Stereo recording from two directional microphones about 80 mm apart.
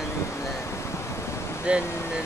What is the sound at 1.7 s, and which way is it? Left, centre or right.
Speech, centre.